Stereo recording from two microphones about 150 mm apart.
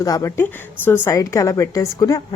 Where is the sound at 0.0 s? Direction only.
20° left (ahead or behind).